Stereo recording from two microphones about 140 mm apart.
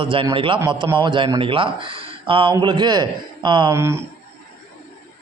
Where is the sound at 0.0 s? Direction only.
40° right (ahead or behind).